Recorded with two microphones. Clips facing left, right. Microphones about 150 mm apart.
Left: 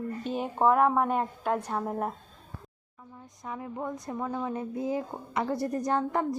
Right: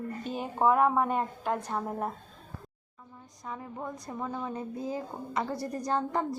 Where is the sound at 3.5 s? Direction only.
15° left (ahead or behind).